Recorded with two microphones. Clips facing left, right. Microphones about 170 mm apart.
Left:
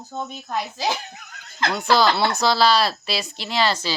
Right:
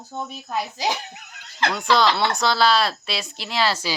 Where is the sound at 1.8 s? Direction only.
Centre (ahead or behind).